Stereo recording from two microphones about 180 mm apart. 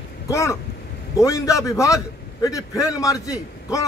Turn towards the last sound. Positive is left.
turn(degrees=20)  # may be behind; listen again after turning